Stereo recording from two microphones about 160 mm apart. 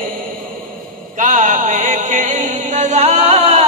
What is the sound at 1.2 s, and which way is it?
Music, 50° right (ahead or behind).